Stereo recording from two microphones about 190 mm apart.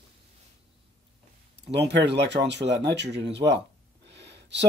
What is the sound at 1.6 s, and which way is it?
Speech, 65° right (ahead or behind).